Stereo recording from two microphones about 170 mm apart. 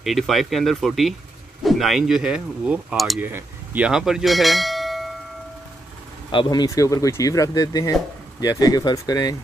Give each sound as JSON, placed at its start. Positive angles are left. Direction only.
{"t": 0.0, "sound": "speech", "side_deg": 0}
{"t": 6.3, "sound": "speech", "side_deg": 25}